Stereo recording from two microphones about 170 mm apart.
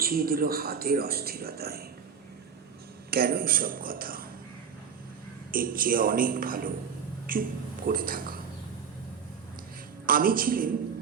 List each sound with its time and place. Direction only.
0.0 s speech: 60° right (ahead or behind)
3.1 s speech: 60° right (ahead or behind)
5.5 s speech: 55° right (ahead or behind)
10.1 s speech: 55° right (ahead or behind)